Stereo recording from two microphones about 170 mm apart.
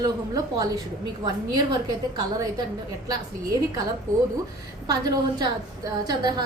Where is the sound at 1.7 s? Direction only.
25° right (ahead or behind).